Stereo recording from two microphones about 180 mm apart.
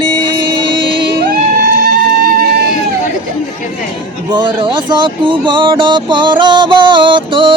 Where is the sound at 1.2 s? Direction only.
55° right (ahead or behind).